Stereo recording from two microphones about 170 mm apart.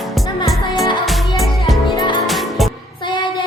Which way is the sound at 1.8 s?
30° left (ahead or behind).